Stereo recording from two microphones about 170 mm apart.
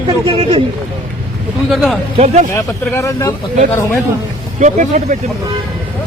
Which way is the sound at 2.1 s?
40° right (ahead or behind).